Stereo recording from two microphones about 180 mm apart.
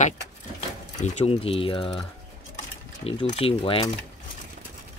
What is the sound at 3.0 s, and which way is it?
Speech, 30° left (ahead or behind).